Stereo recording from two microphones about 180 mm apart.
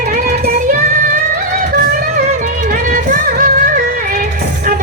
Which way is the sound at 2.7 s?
50° right (ahead or behind).